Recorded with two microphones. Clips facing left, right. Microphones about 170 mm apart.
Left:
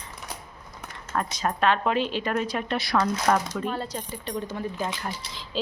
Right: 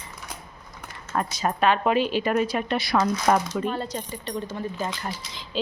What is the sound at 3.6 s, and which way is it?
Speech, 5° left (ahead or behind).